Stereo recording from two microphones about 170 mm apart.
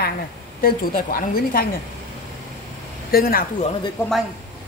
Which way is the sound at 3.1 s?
60° left (ahead or behind).